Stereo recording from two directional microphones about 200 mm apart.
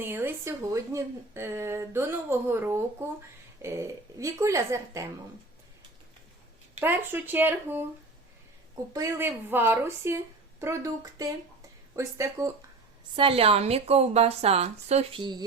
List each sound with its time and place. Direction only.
0.0 s speech: 10° right (ahead or behind)
6.7 s speech: 10° right (ahead or behind)
13.1 s a woman's voice: 30° right (ahead or behind)